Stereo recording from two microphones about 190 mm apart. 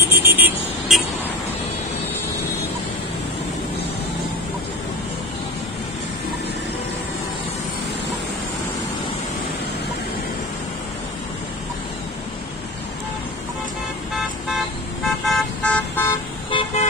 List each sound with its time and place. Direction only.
0.1 s vehicle: 5° right (ahead or behind)
15.0 s vehicle: centre (ahead or behind)
16.4 s car: 25° left (ahead or behind)